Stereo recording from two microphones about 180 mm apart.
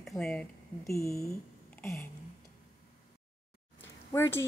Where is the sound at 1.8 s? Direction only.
15° left (ahead or behind).